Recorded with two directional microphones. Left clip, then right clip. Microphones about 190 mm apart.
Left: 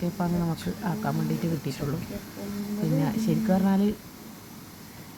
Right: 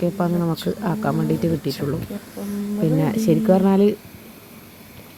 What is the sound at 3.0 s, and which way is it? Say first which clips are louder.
Speech: right 9 dB; 30° right (ahead or behind).